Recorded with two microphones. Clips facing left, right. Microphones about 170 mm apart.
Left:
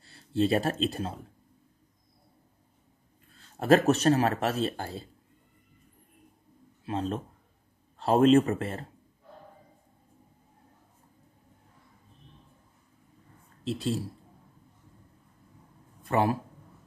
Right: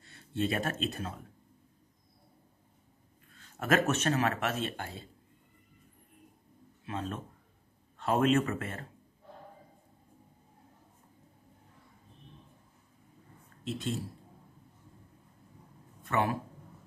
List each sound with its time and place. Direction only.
0.0 s speech: 30° left (ahead or behind)
3.3 s speech: 30° left (ahead or behind)
6.9 s speech: 30° left (ahead or behind)
13.7 s speech: 35° left (ahead or behind)
16.0 s speech: 30° left (ahead or behind)